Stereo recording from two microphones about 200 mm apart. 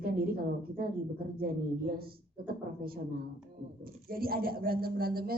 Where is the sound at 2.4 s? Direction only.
45° right (ahead or behind).